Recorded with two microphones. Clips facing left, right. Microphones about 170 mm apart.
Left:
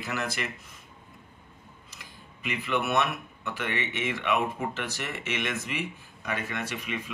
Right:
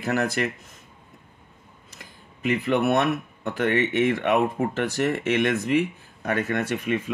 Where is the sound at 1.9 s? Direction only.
50° right (ahead or behind).